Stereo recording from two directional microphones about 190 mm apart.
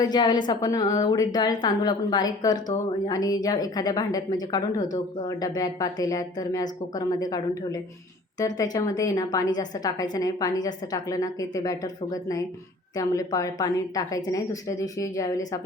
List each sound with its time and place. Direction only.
0.0 s a woman's voice: 20° left (ahead or behind)